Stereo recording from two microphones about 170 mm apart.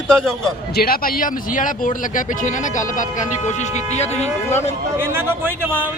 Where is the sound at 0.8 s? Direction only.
60° left (ahead or behind).